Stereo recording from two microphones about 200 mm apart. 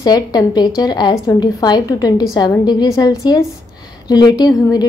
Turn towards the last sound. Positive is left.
turn(degrees=20)  # may be behind; listen again after turning